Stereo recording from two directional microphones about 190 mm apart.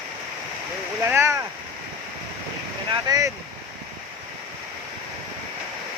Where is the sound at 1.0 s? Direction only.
15° right (ahead or behind).